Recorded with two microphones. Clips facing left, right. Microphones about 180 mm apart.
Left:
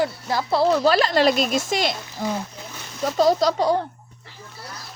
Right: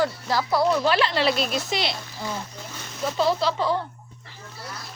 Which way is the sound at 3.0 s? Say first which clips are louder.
Left 4 dB; 40° left (ahead or behind).